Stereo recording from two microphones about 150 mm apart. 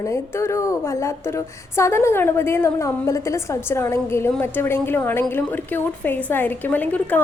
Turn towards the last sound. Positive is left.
turn(degrees=10)  # may be behind; listen again after turning